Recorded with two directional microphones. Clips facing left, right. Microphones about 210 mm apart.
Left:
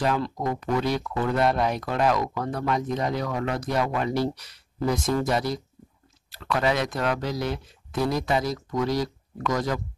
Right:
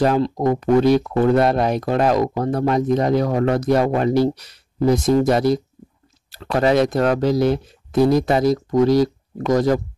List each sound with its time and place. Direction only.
0.7 s speech: 30° right (ahead or behind)